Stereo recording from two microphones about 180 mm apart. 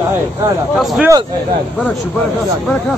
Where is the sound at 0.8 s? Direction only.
Centre (ahead or behind).